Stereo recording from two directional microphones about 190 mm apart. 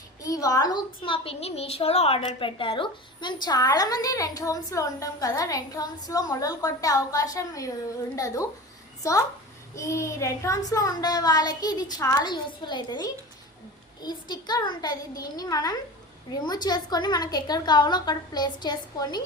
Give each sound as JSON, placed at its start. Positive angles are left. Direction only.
{"t": 0.2, "sound": "a woman's voice", "side_deg": 20}